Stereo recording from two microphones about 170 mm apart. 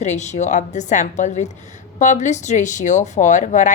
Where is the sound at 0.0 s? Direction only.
45° left (ahead or behind).